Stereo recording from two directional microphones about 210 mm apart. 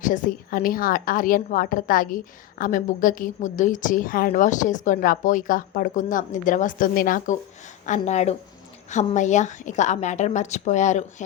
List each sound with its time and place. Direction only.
0.0 s a woman's voice: 40° left (ahead or behind)